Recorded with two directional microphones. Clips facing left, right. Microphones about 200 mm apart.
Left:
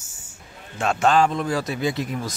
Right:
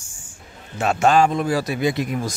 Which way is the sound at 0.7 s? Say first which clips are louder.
Right 2 dB; 10° right (ahead or behind).